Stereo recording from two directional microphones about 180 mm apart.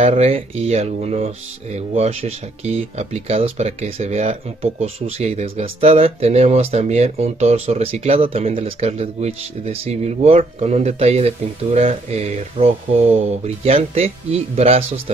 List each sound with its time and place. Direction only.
0.0 s speech: 35° right (ahead or behind)